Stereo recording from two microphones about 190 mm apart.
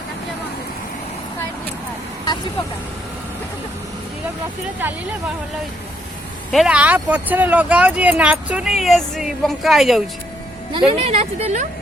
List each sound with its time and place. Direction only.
6.5 s speech: 5° right (ahead or behind)
10.7 s speech: 30° right (ahead or behind)